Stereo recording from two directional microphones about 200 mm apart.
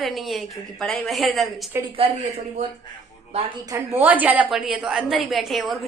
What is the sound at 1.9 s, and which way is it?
Speech, 35° right (ahead or behind).